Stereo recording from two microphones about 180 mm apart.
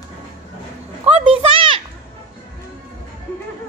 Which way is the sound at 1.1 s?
30° right (ahead or behind).